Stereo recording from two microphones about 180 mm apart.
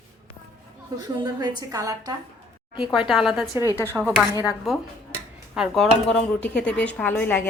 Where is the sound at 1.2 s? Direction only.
25° right (ahead or behind).